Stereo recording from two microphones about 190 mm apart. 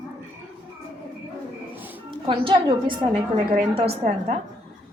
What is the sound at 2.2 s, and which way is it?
A woman's voice, 25° right (ahead or behind).